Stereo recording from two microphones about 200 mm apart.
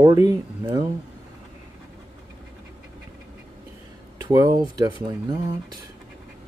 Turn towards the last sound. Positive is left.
turn(degrees=-20)  # may be behind; listen again after turning